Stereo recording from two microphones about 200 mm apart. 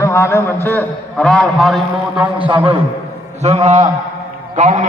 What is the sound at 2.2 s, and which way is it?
A man's voice, 25° right (ahead or behind).